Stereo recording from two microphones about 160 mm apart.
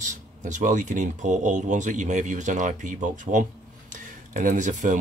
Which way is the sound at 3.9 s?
55° right (ahead or behind).